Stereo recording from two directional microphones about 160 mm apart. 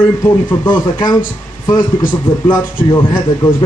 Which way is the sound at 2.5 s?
25° left (ahead or behind).